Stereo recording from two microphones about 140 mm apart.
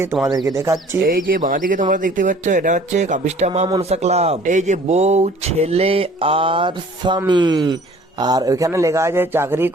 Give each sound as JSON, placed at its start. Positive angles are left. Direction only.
{"t": 0.0, "sound": "speech", "side_deg": -20}
{"t": 1.0, "sound": "speech", "side_deg": -85}